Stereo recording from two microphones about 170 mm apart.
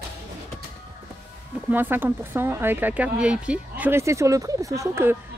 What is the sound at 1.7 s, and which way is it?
Speech, 10° right (ahead or behind).